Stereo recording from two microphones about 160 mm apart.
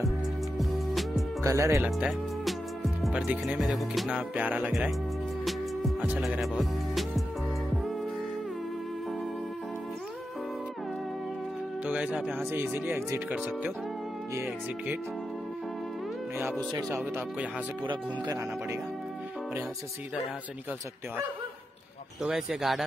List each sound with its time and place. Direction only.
0.6 s music: centre (ahead or behind)
1.4 s speech: 20° right (ahead or behind)
1.8 s speech: 5° right (ahead or behind)
5.4 s music: centre (ahead or behind)
11.8 s speech: 10° right (ahead or behind)
16.7 s speech: 15° right (ahead or behind)
22.2 s speech: 5° right (ahead or behind)